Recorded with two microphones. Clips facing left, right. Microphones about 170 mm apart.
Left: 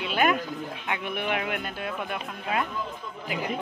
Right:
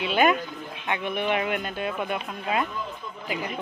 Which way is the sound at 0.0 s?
Centre (ahead or behind).